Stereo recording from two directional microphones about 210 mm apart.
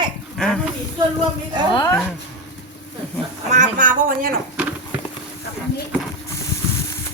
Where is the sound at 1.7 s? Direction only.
20° left (ahead or behind).